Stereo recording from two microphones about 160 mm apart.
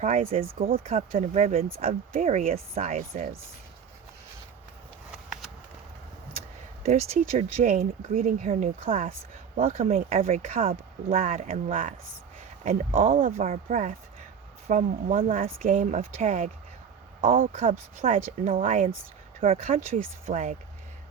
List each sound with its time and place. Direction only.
0.0 s speech: 45° right (ahead or behind)
0.3 s speech: 60° right (ahead or behind)
1.1 s speech: 50° right (ahead or behind)
2.7 s speech: 45° right (ahead or behind)
5.1 s a sound: centre (ahead or behind)
6.8 s speech: 45° right (ahead or behind)